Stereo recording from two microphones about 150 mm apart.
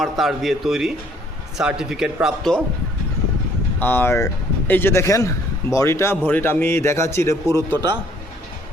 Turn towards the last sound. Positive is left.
turn(degrees=20)  # may be behind; listen again after turning